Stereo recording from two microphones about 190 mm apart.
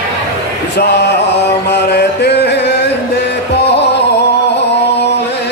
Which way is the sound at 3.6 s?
60° left (ahead or behind).